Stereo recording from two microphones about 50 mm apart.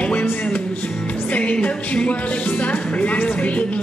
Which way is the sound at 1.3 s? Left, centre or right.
Left.